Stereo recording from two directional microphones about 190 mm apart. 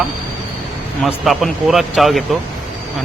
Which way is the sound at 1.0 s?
Centre (ahead or behind).